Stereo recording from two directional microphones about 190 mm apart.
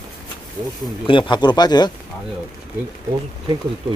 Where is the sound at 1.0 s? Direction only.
25° left (ahead or behind).